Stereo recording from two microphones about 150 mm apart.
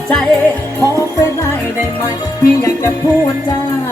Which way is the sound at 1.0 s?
20° left (ahead or behind).